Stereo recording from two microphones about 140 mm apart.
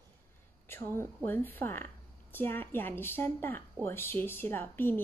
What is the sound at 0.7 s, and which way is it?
A woman's voice, 15° left (ahead or behind).